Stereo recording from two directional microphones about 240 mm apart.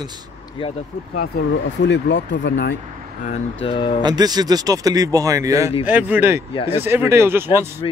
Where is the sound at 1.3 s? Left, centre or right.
Left.